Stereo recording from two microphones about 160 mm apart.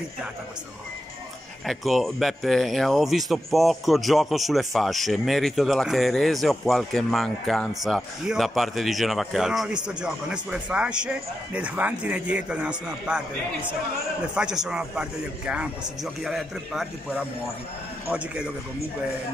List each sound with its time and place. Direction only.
1.7 s speech: centre (ahead or behind)
14.3 s speech: 5° right (ahead or behind)